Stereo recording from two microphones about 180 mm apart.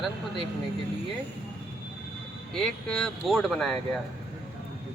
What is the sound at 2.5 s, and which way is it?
Speech, 5° left (ahead or behind).